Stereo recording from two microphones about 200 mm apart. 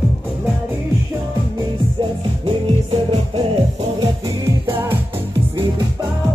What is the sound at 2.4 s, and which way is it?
Music, 30° right (ahead or behind).